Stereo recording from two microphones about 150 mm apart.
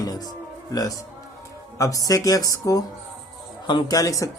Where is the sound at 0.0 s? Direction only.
25° left (ahead or behind).